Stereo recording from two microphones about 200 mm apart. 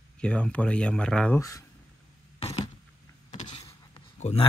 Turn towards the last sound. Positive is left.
turn(degrees=30)  # may be behind; listen again after turning